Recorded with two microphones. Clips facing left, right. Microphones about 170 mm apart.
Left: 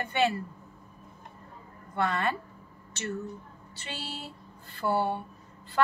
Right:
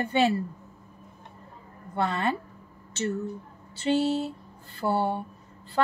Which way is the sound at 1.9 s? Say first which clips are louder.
Right 2 dB; 25° right (ahead or behind).